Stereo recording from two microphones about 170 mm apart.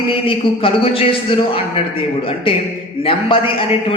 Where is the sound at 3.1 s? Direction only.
30° left (ahead or behind).